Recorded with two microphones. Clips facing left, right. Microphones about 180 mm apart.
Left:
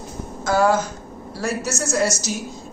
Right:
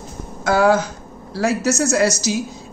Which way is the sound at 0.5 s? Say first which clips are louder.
Right 3 dB; 65° right (ahead or behind).